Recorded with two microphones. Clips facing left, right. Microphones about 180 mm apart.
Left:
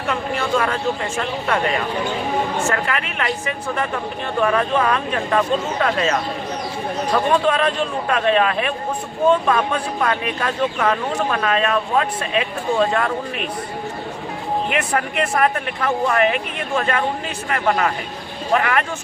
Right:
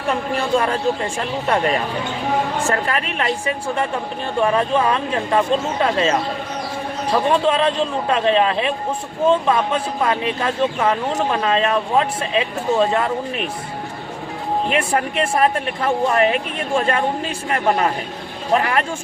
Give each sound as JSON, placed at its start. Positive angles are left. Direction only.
{"t": 0.1, "sound": "speech", "side_deg": -35}
{"t": 2.6, "sound": "speech", "side_deg": -35}
{"t": 14.7, "sound": "speech", "side_deg": -30}